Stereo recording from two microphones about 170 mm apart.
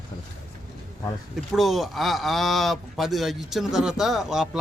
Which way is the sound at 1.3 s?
Centre (ahead or behind).